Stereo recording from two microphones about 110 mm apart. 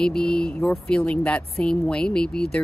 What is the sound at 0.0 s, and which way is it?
Speech, 5° left (ahead or behind).